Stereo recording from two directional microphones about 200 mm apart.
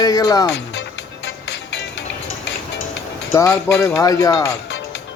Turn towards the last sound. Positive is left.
turn(degrees=15)  # may be behind; listen again after turning